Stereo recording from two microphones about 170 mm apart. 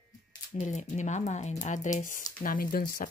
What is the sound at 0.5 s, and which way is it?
Speech, 45° left (ahead or behind).